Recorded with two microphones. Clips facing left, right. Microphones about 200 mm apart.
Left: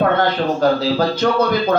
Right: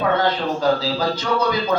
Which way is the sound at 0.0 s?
55° left (ahead or behind).